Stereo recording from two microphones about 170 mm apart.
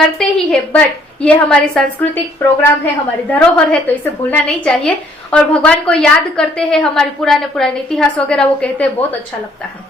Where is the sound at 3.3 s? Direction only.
10° left (ahead or behind).